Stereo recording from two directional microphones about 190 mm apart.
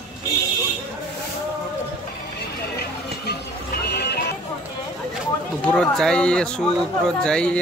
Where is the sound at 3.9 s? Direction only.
60° left (ahead or behind).